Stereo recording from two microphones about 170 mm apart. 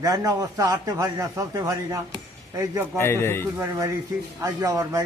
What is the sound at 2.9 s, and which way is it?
Speech, 15° left (ahead or behind).